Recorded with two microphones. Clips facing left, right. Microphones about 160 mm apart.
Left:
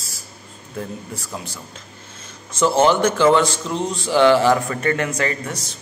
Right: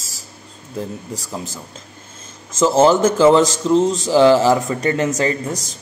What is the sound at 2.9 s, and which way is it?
Speech, 30° right (ahead or behind).